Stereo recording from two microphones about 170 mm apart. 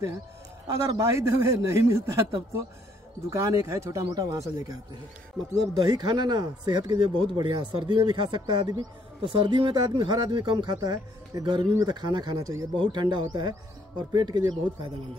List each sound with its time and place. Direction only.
0.8 s speech: 20° right (ahead or behind)